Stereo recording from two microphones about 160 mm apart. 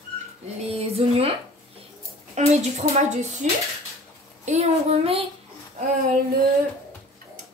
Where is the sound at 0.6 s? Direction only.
40° right (ahead or behind).